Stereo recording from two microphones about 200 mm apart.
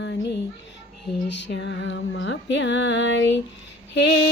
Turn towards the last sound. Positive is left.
turn(degrees=60)  # may be behind; listen again after turning